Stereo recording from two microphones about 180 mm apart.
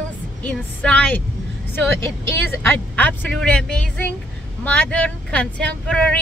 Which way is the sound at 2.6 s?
10° left (ahead or behind).